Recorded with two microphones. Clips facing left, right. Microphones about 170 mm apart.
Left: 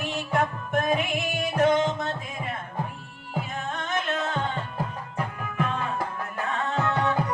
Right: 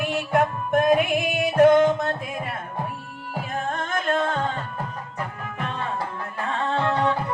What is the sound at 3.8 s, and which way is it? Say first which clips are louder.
Music: right 4 dB; 50° right (ahead or behind).